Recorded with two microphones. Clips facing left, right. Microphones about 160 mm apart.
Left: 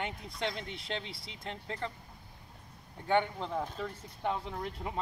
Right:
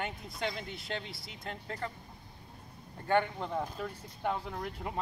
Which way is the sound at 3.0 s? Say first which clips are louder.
Even; 5° right (ahead or behind).